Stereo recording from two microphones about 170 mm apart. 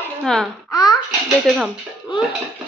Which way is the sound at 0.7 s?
20° left (ahead or behind).